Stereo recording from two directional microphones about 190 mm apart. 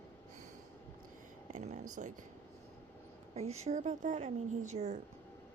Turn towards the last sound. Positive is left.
turn(degrees=-40)  # may be behind; listen again after turning